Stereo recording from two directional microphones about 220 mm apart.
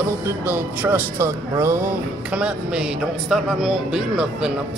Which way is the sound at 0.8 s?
10° right (ahead or behind).